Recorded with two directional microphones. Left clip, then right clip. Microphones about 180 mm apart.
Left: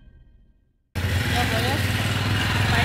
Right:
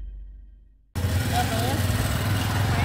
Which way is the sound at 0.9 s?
60° right (ahead or behind).